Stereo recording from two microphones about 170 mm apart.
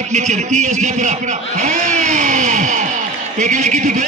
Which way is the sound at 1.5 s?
45° right (ahead or behind).